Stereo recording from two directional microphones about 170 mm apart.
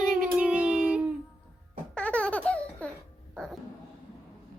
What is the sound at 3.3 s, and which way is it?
Music, centre (ahead or behind).